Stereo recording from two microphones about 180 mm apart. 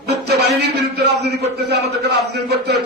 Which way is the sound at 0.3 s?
65° right (ahead or behind).